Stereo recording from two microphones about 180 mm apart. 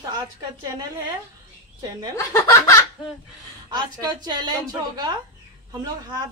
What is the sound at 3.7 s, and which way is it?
A woman's voice, 25° right (ahead or behind).